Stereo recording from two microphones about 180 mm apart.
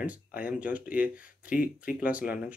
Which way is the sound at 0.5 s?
10° right (ahead or behind).